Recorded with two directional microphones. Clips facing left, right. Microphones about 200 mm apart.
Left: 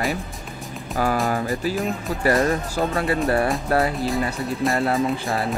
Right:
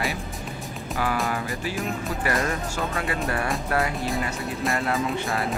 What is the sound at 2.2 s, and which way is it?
Speech, 35° left (ahead or behind).